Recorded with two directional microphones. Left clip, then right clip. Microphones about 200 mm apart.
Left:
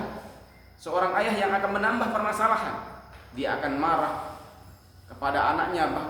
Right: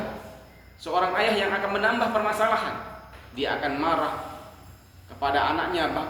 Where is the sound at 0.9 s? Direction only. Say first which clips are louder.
Right 2 dB; 15° left (ahead or behind).